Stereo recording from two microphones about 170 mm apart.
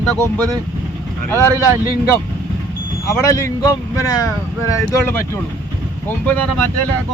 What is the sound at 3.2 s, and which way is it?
Speech, 20° left (ahead or behind).